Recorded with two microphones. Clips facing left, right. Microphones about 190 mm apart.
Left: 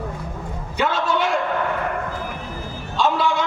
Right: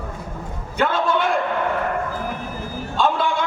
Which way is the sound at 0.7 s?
55° right (ahead or behind).